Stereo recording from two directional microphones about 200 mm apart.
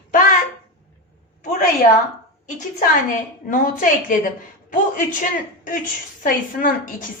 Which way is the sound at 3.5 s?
40° left (ahead or behind).